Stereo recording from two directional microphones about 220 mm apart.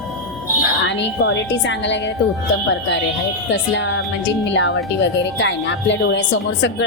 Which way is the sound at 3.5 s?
55° left (ahead or behind).